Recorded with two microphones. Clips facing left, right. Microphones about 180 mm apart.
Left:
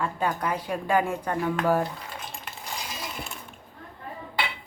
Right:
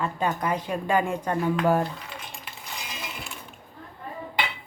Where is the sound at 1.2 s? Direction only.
15° right (ahead or behind).